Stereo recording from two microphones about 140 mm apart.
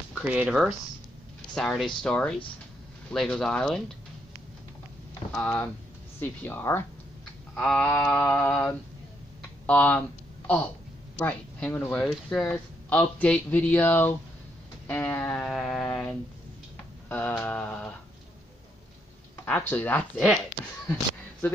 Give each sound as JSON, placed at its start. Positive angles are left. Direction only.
{"t": 0.1, "sound": "speech", "side_deg": -10}
{"t": 5.3, "sound": "speech", "side_deg": 10}
{"t": 14.9, "sound": "a sound", "side_deg": 15}
{"t": 17.1, "sound": "speech", "side_deg": 10}
{"t": 19.4, "sound": "speech", "side_deg": 15}